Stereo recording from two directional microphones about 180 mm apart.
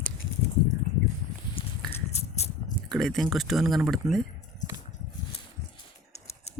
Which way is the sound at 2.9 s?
Centre (ahead or behind).